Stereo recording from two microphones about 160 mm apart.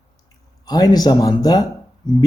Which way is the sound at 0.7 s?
25° left (ahead or behind).